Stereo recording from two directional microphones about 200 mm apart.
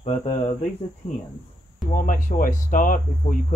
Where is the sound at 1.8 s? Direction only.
40° left (ahead or behind).